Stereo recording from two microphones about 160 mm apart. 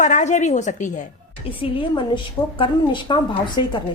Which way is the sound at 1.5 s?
35° left (ahead or behind).